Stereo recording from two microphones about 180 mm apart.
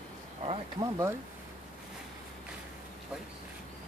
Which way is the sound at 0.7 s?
20° right (ahead or behind).